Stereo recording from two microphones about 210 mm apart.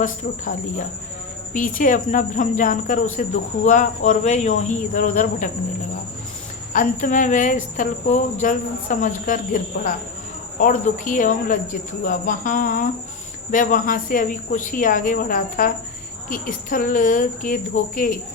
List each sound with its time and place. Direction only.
0.0 s speech: 40° left (ahead or behind)
6.7 s speech: 40° left (ahead or behind)